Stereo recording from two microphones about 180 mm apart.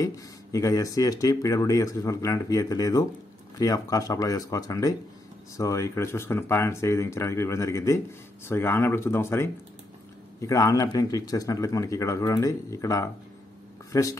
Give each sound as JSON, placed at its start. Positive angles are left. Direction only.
{"t": 0.0, "sound": "speech", "side_deg": 20}